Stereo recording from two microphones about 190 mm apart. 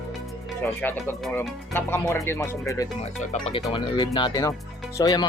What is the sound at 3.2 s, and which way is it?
Speech, 35° left (ahead or behind).